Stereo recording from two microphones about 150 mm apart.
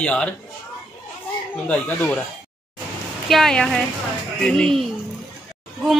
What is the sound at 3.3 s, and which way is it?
Speech, 5° left (ahead or behind).